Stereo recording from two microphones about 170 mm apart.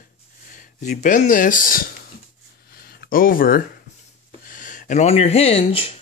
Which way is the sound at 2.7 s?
65° left (ahead or behind).